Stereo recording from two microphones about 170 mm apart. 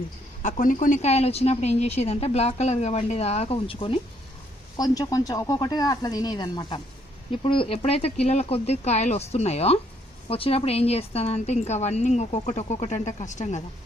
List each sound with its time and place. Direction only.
0.4 s speech: 50° left (ahead or behind); by 3.9 s 30° left (ahead or behind)
4.8 s speech: 20° left (ahead or behind); by 13.6 s 45° left (ahead or behind)